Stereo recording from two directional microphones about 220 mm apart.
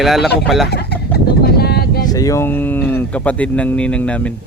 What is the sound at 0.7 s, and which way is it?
Speech, 50° left (ahead or behind).